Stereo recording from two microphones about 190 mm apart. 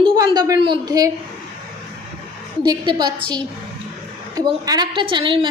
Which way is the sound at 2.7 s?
20° right (ahead or behind).